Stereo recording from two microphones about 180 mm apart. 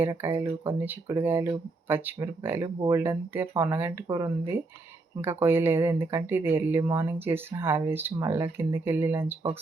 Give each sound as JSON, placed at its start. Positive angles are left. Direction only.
{"t": 0.0, "sound": "speech", "side_deg": -10}
{"t": 2.7, "sound": "speech", "side_deg": -25}
{"t": 3.0, "sound": "speech", "side_deg": -15}